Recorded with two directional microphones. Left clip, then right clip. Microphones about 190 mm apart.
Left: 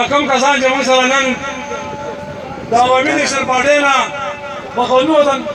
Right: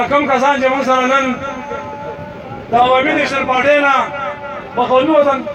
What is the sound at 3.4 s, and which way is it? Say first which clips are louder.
Speech: even; 65° right (ahead or behind).